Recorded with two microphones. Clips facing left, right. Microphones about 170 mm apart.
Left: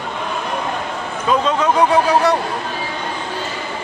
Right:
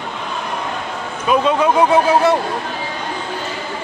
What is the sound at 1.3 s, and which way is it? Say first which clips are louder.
Speech: right 2 dB; 15° right (ahead or behind).